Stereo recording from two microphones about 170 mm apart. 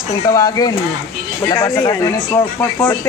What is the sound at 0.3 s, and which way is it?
Speech, 20° left (ahead or behind).